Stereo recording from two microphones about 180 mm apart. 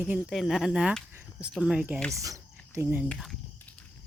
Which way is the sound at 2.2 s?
15° right (ahead or behind).